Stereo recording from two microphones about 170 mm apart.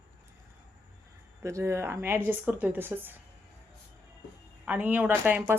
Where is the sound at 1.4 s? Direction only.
15° right (ahead or behind).